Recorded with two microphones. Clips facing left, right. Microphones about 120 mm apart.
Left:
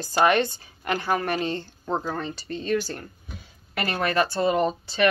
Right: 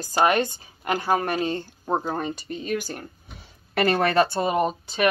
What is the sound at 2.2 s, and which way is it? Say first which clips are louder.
Speech: right 1 dB; 15° right (ahead or behind).